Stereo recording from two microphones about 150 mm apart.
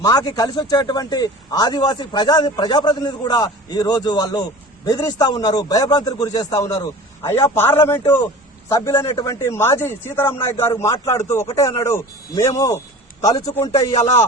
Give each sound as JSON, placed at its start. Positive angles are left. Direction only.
{"t": 0.0, "sound": "speech", "side_deg": 25}
{"t": 13.9, "sound": "speech", "side_deg": 45}